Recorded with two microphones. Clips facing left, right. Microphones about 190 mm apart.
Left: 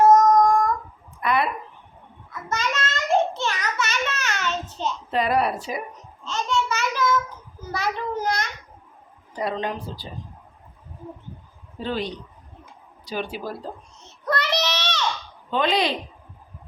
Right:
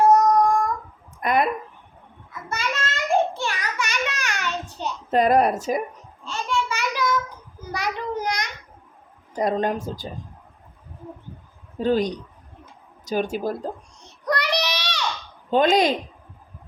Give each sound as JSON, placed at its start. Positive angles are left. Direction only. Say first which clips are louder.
{"t": 1.2, "sound": "a sound", "louder": "right 2 dB", "side_deg": -45}
{"t": 2.5, "sound": "a sound", "louder": "left 1 dB", "side_deg": -10}
{"t": 5.1, "sound": "speech", "louder": "right 5 dB", "side_deg": -45}
{"t": 6.2, "sound": "child singing", "louder": "left 1 dB", "side_deg": -10}
{"t": 7.7, "sound": "a sound", "louder": "even", "side_deg": -15}
{"t": 9.3, "sound": "speech", "louder": "right 4 dB", "side_deg": -45}
{"t": 11.8, "sound": "speech", "louder": "right 7 dB", "side_deg": -45}
{"t": 14.0, "sound": "child singing", "louder": "right 1 dB", "side_deg": -15}
{"t": 15.4, "sound": "speech", "louder": "right 4 dB", "side_deg": -45}